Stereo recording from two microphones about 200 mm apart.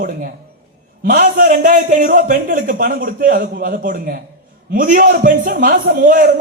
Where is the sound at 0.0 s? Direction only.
45° right (ahead or behind).